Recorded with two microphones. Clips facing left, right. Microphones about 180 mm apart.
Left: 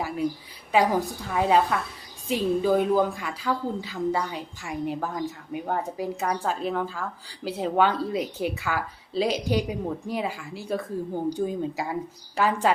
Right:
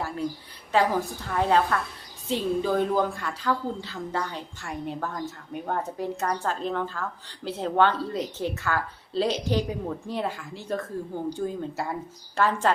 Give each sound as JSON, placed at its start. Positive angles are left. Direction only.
{"t": 0.7, "sound": "a woman's voice", "side_deg": 15}